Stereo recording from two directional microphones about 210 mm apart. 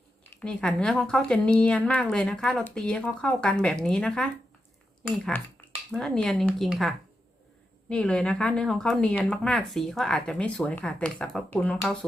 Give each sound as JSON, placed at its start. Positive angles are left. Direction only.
{"t": 0.4, "sound": "speech", "side_deg": 5}